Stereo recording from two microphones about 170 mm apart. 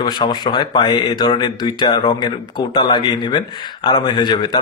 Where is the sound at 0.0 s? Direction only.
25° left (ahead or behind).